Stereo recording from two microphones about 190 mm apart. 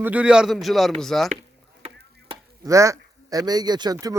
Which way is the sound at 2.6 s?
15° right (ahead or behind).